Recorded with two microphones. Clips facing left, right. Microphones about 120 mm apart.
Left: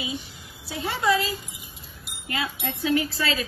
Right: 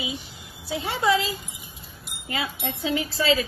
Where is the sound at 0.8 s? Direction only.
20° right (ahead or behind).